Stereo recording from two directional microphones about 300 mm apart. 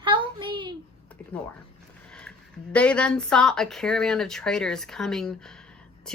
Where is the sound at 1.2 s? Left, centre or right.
Centre.